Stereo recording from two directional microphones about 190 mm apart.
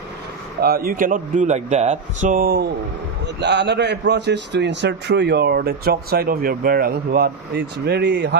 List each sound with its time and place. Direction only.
0.6 s a man's voice: 50° right (ahead or behind)
3.2 s a man's voice: 65° right (ahead or behind)